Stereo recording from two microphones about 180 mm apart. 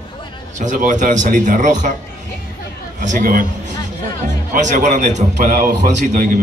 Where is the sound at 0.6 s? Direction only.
45° right (ahead or behind).